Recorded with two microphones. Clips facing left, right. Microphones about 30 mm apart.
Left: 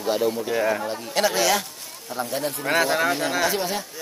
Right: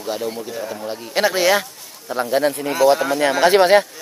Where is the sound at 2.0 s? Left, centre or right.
Right.